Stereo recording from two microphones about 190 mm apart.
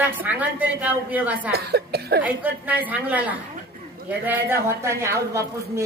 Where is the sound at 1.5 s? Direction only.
55° right (ahead or behind).